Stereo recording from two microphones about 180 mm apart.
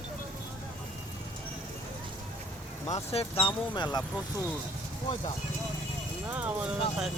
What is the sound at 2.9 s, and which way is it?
Speech, 35° left (ahead or behind).